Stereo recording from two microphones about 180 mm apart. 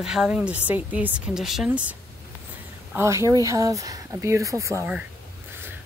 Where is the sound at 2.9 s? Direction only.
15° right (ahead or behind).